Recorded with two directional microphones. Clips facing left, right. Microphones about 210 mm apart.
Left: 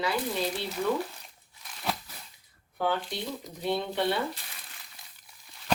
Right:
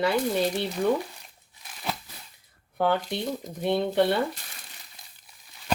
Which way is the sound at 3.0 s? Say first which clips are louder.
Right 5 dB; 45° right (ahead or behind).